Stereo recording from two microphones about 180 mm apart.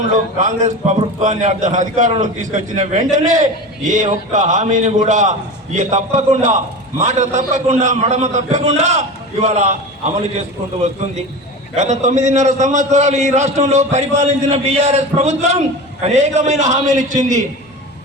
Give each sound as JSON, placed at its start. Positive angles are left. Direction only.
{"t": 0.3, "sound": "a man's voice", "side_deg": -40}
{"t": 11.8, "sound": "a man's voice", "side_deg": -40}